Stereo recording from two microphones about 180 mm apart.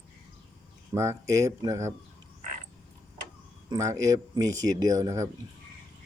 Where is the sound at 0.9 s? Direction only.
15° right (ahead or behind).